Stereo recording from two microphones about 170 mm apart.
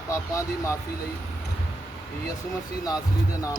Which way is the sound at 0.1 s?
20° left (ahead or behind).